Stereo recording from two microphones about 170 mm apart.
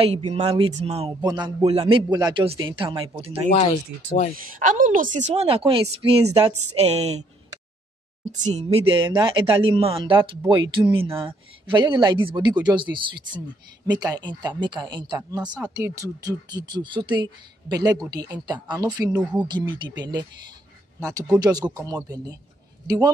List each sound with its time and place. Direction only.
0.0 s a woman's voice: 35° right (ahead or behind)
1.2 s a woman's voice: 25° right (ahead or behind)
4.4 s a woman's voice: 50° right (ahead or behind)
8.3 s a woman's voice: 45° right (ahead or behind); by 15.4 s 25° right (ahead or behind)
15.4 s speech: 5° right (ahead or behind)
15.7 s speech: 20° right (ahead or behind)